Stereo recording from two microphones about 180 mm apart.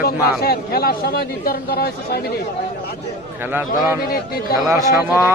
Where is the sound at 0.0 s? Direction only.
60° left (ahead or behind).